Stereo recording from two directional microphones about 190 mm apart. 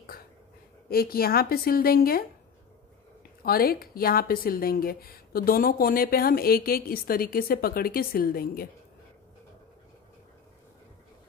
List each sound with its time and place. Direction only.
0.8 s a woman's voice: 55° left (ahead or behind)
3.4 s a woman's voice: 50° left (ahead or behind)